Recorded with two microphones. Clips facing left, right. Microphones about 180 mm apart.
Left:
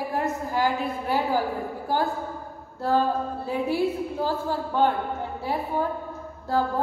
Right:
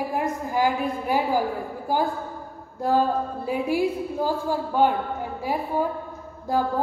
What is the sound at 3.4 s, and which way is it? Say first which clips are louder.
A woman's voice: right 1 dB; 10° right (ahead or behind).